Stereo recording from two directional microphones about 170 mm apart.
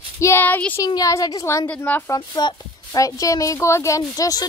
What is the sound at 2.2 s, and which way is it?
Speech, 25° left (ahead or behind).